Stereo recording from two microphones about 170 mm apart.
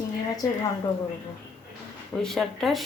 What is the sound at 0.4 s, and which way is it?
Speech, 20° left (ahead or behind).